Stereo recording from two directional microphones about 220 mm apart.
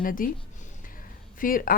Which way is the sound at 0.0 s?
40° left (ahead or behind).